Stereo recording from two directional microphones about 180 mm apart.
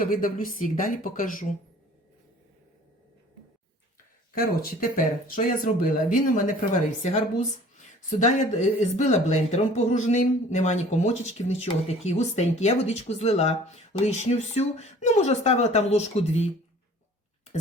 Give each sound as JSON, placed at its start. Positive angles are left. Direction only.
{"t": 0.0, "sound": "speech", "side_deg": 50}
{"t": 4.4, "sound": "speech", "side_deg": 55}